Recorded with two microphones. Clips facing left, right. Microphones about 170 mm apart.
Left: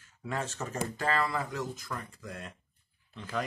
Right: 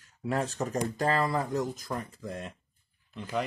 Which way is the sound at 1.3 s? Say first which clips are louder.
Right 5 dB; 20° right (ahead or behind).